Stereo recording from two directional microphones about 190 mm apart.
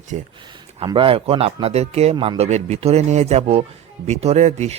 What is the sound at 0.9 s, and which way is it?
Speech, 25° right (ahead or behind).